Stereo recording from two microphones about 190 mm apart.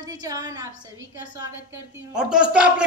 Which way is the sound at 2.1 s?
5° right (ahead or behind).